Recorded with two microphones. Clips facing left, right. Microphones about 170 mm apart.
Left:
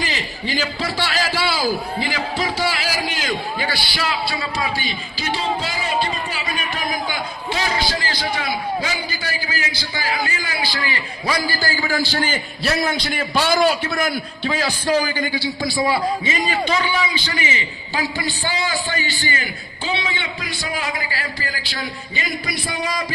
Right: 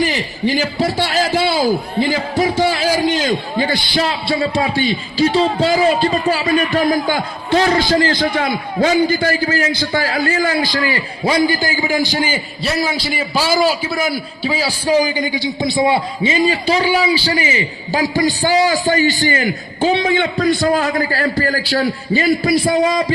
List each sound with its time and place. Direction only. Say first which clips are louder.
0.0 s a sound: right 9 dB; 15° right (ahead or behind)
0.8 s a man's voice: right 7 dB; 45° right (ahead or behind)
1.2 s a man's voice: right 7 dB; 20° right (ahead or behind)
2.4 s a sound: right 8 dB; 20° right (ahead or behind)
4.5 s a man's voice: right 8 dB; 30° right (ahead or behind)
6.9 s a man's voice: right 8 dB; 50° right (ahead or behind)
11.3 s a man's voice: right 7 dB; 25° right (ahead or behind)
12.6 s a man's voice: right 2 dB; centre (ahead or behind); by 23.0 s 45° right (ahead or behind)